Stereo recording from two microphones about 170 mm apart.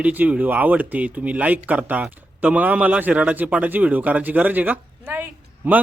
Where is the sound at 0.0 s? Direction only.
10° right (ahead or behind).